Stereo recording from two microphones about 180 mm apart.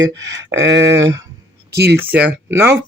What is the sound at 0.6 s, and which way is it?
Speech, 75° right (ahead or behind).